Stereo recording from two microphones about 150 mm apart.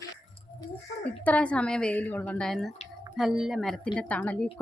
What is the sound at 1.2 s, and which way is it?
Speech, 10° left (ahead or behind).